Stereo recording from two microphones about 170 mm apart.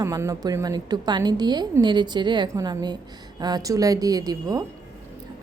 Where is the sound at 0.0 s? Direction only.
20° right (ahead or behind).